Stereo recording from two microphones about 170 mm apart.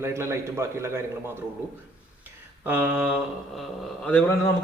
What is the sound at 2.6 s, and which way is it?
Speech, 10° right (ahead or behind).